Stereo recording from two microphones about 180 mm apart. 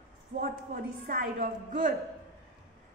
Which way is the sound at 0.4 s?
55° right (ahead or behind).